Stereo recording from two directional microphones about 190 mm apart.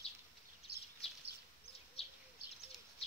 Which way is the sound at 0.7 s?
60° right (ahead or behind).